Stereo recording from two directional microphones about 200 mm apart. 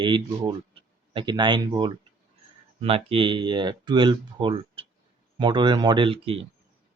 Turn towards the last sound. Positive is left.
turn(degrees=-30)  # may be behind; listen again after turning